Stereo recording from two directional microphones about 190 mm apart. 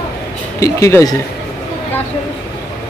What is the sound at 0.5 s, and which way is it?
Speech, 15° left (ahead or behind).